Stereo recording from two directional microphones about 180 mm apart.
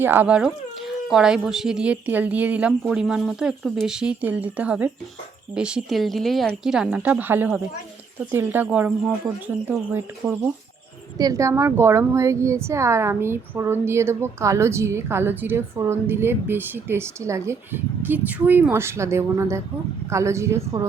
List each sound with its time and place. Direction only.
0.0 s a woman's voice: 10° right (ahead or behind)